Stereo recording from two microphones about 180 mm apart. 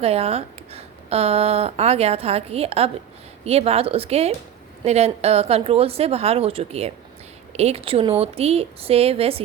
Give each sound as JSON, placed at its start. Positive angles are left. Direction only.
{"t": 0.0, "sound": "speech", "side_deg": -35}